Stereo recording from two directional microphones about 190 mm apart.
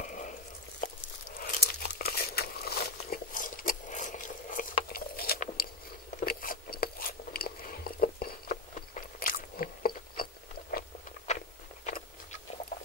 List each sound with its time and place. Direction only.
0.0 s a sound: 45° left (ahead or behind)
1.4 s crumpling: 55° left (ahead or behind)
6.2 s biting: 50° left (ahead or behind)
11.2 s biting: 40° left (ahead or behind)